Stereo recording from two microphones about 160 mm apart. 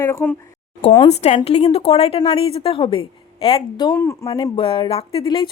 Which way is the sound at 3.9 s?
20° left (ahead or behind).